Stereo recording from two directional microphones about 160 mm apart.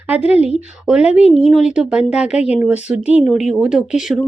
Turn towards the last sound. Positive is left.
turn(degrees=-5)  # may be behind; listen again after turning